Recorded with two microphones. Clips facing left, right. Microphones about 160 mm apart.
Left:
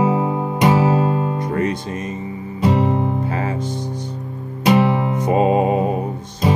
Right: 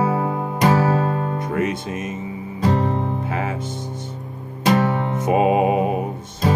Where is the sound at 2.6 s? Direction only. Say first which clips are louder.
Left 3 dB; 10° left (ahead or behind).